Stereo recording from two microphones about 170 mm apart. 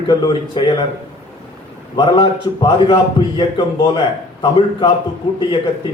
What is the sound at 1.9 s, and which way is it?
A man's voice, 25° left (ahead or behind).